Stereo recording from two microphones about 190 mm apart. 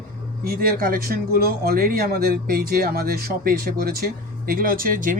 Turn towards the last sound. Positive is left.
turn(degrees=-45)  # may be behind; listen again after turning